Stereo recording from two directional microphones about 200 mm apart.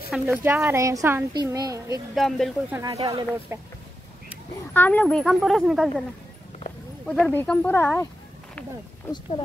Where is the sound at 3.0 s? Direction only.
25° right (ahead or behind).